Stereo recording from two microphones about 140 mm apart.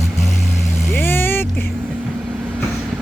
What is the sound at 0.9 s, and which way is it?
Vehicle, 15° left (ahead or behind).